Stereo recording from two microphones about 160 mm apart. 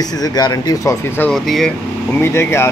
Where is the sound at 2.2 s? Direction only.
15° left (ahead or behind).